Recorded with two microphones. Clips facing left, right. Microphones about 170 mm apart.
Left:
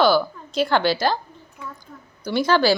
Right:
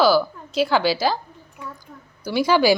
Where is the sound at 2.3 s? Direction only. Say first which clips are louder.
Right 1 dB; 10° right (ahead or behind).